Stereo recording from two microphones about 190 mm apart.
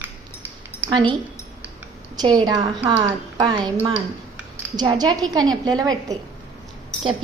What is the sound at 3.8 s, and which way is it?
Speech, 35° right (ahead or behind).